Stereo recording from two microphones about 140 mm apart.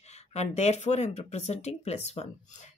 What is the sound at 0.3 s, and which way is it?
Speech, 50° left (ahead or behind).